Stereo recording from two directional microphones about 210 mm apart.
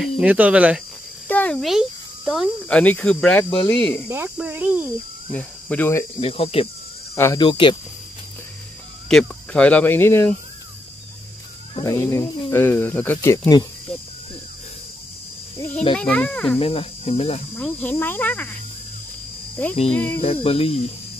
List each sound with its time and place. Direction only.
0.0 s speech: 5° right (ahead or behind)
1.3 s a child's voice: 5° left (ahead or behind)
4.1 s speech: 10° right (ahead or behind)
5.3 s speech: 5° left (ahead or behind)
6.2 s cricket: 25° left (ahead or behind)
7.2 s speech: 15° left (ahead or behind)
7.4 s cricket: 25° left (ahead or behind)
9.1 s speech: 5° left (ahead or behind)
11.8 s speech: 15° left (ahead or behind)
15.5 s a child's voice: 10° left (ahead or behind)
16.5 s cricket: 25° left (ahead or behind)
17.6 s speech: 5° left (ahead or behind)
19.9 s speech: 5° left (ahead or behind)
20.4 s cricket: 25° left (ahead or behind)